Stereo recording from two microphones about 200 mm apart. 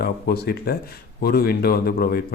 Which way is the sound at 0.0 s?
50° left (ahead or behind).